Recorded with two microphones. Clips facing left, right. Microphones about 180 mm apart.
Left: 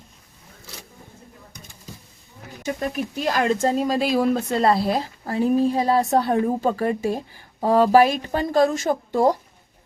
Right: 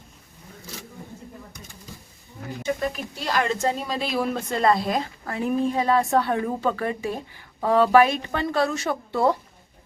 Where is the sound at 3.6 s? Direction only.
40° left (ahead or behind).